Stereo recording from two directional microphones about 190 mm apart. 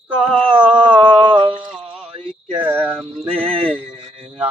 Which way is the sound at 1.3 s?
25° right (ahead or behind).